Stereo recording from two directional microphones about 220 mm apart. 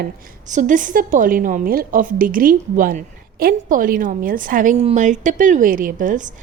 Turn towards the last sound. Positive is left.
turn(degrees=-35)  # may be behind; listen again after turning